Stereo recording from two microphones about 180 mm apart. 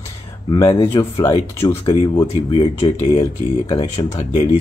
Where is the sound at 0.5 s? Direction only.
20° left (ahead or behind).